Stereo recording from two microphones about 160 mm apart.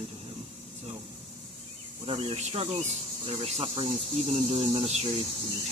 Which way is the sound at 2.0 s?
40° right (ahead or behind).